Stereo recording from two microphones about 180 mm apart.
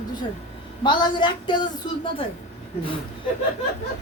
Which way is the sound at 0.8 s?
25° left (ahead or behind).